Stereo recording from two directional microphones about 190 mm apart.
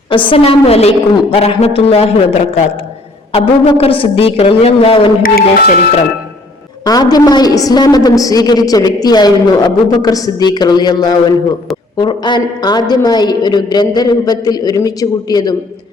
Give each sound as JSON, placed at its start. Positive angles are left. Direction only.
{"t": 0.1, "sound": "a woman's voice", "side_deg": 25}
{"t": 5.2, "sound": "speech", "side_deg": 55}
{"t": 6.8, "sound": "a woman's voice", "side_deg": 20}